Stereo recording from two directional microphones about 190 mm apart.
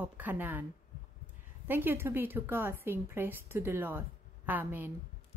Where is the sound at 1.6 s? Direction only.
10° right (ahead or behind).